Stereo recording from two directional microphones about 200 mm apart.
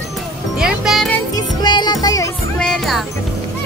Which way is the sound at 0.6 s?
Centre (ahead or behind).